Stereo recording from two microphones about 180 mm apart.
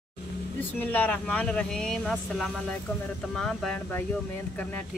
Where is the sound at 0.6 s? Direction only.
10° left (ahead or behind).